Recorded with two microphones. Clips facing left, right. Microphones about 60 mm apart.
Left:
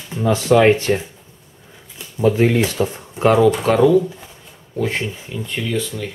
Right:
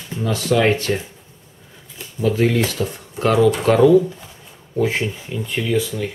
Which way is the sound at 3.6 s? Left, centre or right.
Centre.